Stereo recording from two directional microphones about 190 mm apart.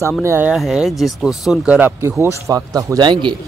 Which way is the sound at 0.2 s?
10° right (ahead or behind).